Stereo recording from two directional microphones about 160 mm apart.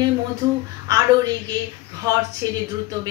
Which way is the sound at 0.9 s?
20° right (ahead or behind).